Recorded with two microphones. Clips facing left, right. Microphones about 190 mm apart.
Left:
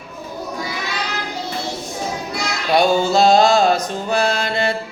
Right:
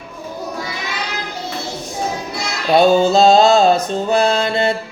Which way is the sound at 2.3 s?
20° right (ahead or behind).